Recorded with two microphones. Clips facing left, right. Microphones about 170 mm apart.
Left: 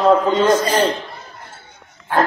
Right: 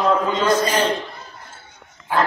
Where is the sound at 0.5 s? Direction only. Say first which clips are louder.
Left 2 dB; 35° left (ahead or behind).